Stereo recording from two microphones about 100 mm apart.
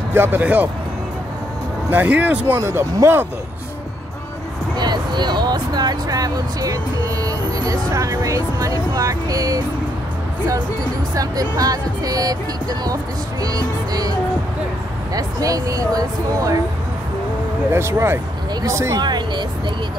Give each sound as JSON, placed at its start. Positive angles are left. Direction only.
{"t": 0.1, "sound": "speech", "side_deg": -20}
{"t": 1.9, "sound": "speech", "side_deg": -15}
{"t": 4.7, "sound": "speech", "side_deg": -45}
{"t": 11.1, "sound": "speech", "side_deg": -35}
{"t": 15.1, "sound": "speech", "side_deg": -35}
{"t": 17.7, "sound": "speech", "side_deg": -25}
{"t": 18.9, "sound": "speech", "side_deg": -45}